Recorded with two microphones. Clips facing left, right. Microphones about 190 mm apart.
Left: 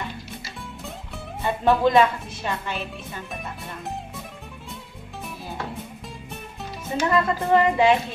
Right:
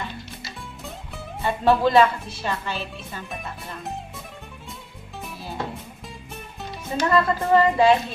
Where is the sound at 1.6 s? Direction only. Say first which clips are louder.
Right 1 dB; 15° left (ahead or behind).